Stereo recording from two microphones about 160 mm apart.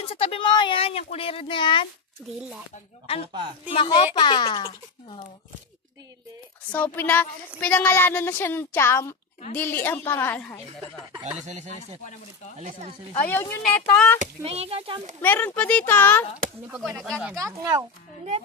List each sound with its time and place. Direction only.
0.0 s speech: 35° left (ahead or behind)
3.7 s speech: 30° left (ahead or behind)
6.7 s speech: 10° left (ahead or behind)
11.3 s speech: 45° right (ahead or behind)
13.3 s speech: 15° left (ahead or behind)
14.1 s speech: 40° right (ahead or behind)
15.2 s speech: 10° left (ahead or behind)
16.7 s speech: 5° right (ahead or behind)
17.4 s speech: 20° right (ahead or behind)